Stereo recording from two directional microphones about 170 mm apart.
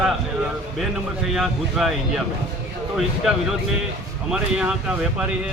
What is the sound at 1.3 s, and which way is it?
Speech, centre (ahead or behind).